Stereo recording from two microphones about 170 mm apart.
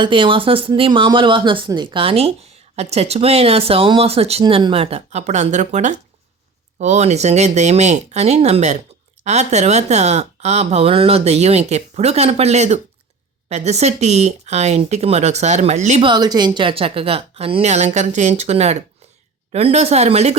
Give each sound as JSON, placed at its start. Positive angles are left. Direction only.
{"t": 0.0, "sound": "speech", "side_deg": -30}
{"t": 16.0, "sound": "speech", "side_deg": -25}